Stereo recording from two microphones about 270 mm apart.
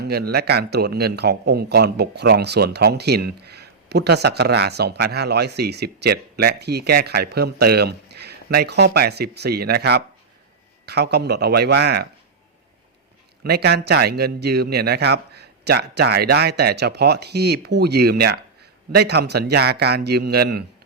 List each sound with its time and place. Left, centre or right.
0.0 s a man's voice: right
13.4 s a man's voice: right